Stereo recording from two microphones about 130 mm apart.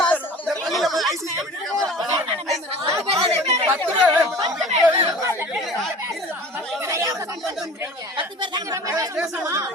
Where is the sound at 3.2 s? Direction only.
55° right (ahead or behind).